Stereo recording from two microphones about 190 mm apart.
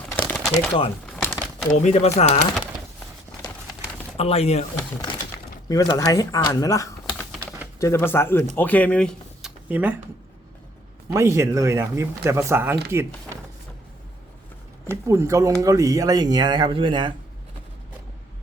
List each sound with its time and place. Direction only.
0.2 s a sound: 5° left (ahead or behind)
1.1 s crumpling: 10° left (ahead or behind)
1.8 s speech: 35° left (ahead or behind)
3.4 s horse: 20° left (ahead or behind)
4.2 s speech: 35° left (ahead or behind)
5.6 s speech: 20° left (ahead or behind)
9.6 s speech: 10° right (ahead or behind)
11.1 s speech: 15° right (ahead or behind)
14.8 s speech: 15° right (ahead or behind)